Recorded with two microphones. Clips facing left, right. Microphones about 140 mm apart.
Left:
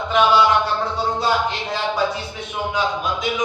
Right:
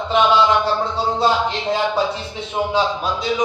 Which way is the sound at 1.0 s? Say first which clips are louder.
Right 3 dB; 25° right (ahead or behind).